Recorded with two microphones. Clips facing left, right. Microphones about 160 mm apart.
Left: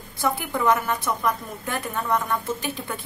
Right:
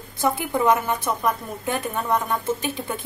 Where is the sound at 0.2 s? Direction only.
20° right (ahead or behind).